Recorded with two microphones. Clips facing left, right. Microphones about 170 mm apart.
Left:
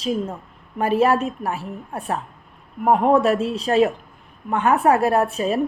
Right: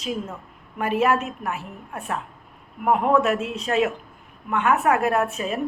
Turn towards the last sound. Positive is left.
turn(degrees=30)  # may be behind; listen again after turning